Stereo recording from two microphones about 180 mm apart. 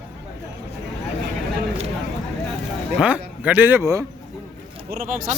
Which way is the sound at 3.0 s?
10° right (ahead or behind).